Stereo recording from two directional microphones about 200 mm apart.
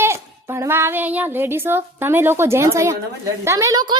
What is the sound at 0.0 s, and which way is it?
A woman's voice, 15° right (ahead or behind).